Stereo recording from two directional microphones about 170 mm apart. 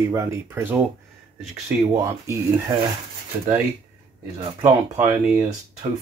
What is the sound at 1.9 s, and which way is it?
Speech, 20° right (ahead or behind).